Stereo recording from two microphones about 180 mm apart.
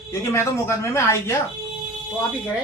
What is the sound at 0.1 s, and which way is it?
Speech, 15° left (ahead or behind).